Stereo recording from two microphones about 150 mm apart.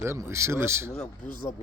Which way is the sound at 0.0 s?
15° right (ahead or behind).